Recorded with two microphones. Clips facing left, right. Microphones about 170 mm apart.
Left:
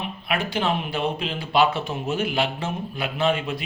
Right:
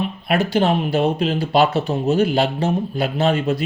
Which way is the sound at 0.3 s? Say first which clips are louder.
Right 7 dB; 40° right (ahead or behind).